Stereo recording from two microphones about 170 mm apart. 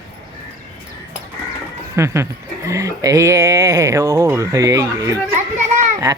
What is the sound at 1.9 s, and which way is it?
Speech, 15° right (ahead or behind).